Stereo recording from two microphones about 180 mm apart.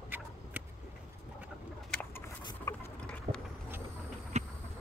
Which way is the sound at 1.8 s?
10° left (ahead or behind).